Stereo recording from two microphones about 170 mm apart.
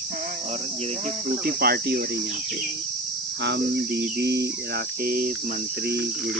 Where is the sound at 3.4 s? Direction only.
80° right; by 5.3 s 60° right (ahead or behind).